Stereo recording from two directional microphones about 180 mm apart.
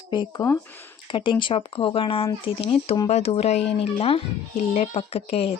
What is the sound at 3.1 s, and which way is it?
Speech, 35° left (ahead or behind).